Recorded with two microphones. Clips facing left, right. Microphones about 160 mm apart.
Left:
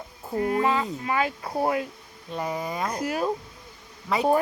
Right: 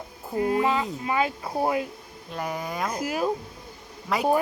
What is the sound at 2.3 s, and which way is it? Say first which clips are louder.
Speech: left 1 dB; centre (ahead or behind).